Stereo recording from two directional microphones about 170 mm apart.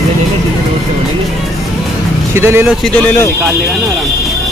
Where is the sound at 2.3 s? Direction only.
15° right (ahead or behind).